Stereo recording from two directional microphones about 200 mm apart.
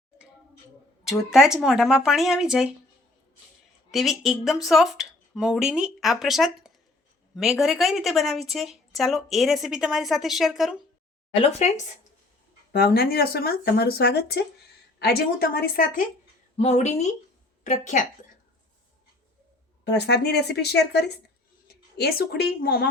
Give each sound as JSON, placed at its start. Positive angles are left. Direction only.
{"t": 1.3, "sound": "a woman's voice", "side_deg": -5}
{"t": 3.9, "sound": "a woman's voice", "side_deg": 0}
{"t": 11.3, "sound": "a woman's voice", "side_deg": 30}
{"t": 12.7, "sound": "speech", "side_deg": 50}
{"t": 16.6, "sound": "a woman's voice", "side_deg": 35}
{"t": 20.1, "sound": "speech", "side_deg": 55}
{"t": 21.7, "sound": "a sound", "side_deg": 50}
{"t": 22.6, "sound": "speech", "side_deg": 50}